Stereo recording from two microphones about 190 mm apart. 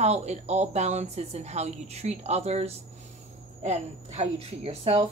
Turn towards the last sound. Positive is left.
turn(degrees=-30)  # may be behind; listen again after turning